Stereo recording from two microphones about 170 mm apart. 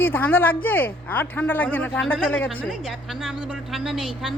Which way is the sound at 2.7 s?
Centre (ahead or behind).